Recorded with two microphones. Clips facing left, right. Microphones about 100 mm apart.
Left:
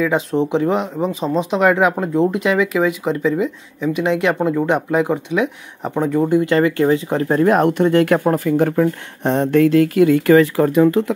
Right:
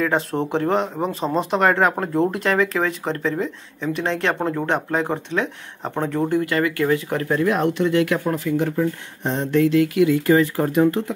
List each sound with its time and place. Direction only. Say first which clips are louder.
0.0 s speech: left 4 dB; centre (ahead or behind); by 7.2 s 25° left (ahead or behind)
7.2 s speech: left 6 dB; 45° left (ahead or behind)
8.7 s speech: left 5 dB; 65° left (ahead or behind); by 10.2 s 45° left (ahead or behind)
10.2 s speech: left 5 dB; 90° left